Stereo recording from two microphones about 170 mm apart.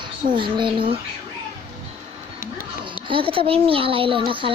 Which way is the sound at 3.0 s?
30° right (ahead or behind).